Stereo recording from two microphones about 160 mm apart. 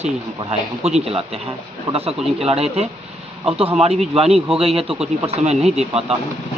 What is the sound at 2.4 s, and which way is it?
Speech, 40° right (ahead or behind).